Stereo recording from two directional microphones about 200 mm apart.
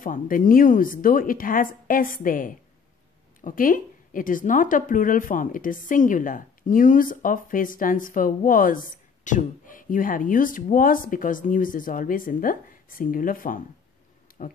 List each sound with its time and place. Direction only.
0.0 s a woman's voice: 40° left (ahead or behind)